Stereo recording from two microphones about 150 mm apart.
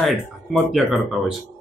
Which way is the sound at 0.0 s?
Centre (ahead or behind).